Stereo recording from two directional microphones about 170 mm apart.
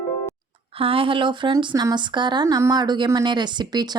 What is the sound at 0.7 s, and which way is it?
Speech, 30° right (ahead or behind).